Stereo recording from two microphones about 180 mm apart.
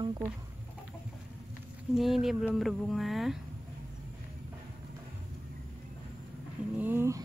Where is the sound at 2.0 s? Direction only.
Centre (ahead or behind).